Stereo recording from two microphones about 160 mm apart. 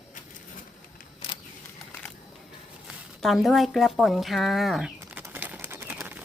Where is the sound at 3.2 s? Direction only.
Centre (ahead or behind).